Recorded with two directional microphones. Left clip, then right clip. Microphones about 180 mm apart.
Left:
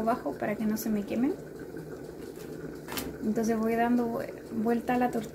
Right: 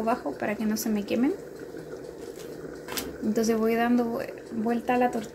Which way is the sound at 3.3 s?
25° right (ahead or behind).